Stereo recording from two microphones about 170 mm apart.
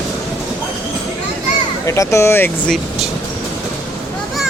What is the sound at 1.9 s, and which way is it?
Speech, 15° left (ahead or behind).